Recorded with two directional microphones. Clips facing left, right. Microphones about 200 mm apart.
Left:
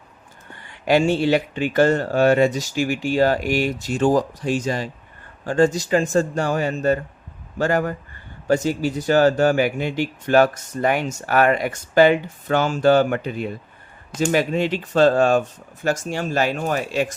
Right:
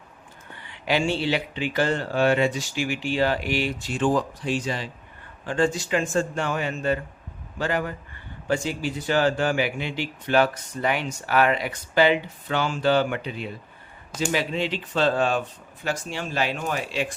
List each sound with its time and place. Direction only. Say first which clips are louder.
0.5 s speech: left 7 dB; 45° left (ahead or behind)